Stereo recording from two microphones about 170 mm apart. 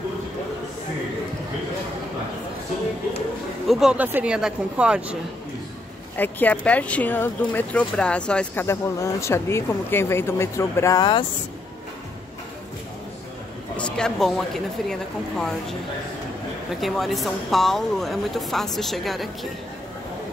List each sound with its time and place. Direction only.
3.6 s speech: centre (ahead or behind)
6.1 s speech: 10° left (ahead or behind)
13.7 s speech: 5° left (ahead or behind)
16.8 s speech: centre (ahead or behind)